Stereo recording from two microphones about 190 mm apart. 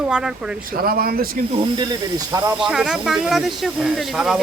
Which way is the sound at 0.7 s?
50° right (ahead or behind).